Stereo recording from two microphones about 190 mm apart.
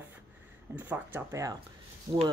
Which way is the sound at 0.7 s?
10° right (ahead or behind).